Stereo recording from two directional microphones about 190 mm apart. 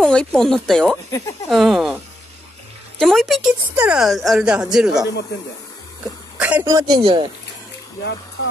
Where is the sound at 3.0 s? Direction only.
Centre (ahead or behind).